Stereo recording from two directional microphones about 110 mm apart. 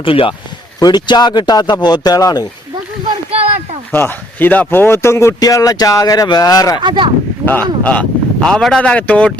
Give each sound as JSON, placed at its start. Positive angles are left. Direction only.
{"t": 0.0, "sound": "speech", "side_deg": 55}
{"t": 0.8, "sound": "speech", "side_deg": 40}
{"t": 3.9, "sound": "speech", "side_deg": 20}
{"t": 6.8, "sound": "speech", "side_deg": -45}
{"t": 7.4, "sound": "speech", "side_deg": 15}